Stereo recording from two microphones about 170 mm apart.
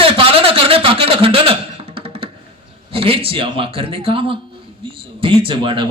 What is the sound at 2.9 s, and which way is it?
A man's voice, 35° right (ahead or behind).